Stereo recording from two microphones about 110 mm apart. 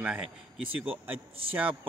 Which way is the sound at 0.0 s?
15° right (ahead or behind).